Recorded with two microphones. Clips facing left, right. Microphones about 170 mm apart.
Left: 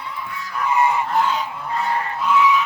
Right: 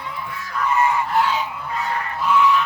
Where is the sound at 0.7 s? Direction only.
20° left (ahead or behind).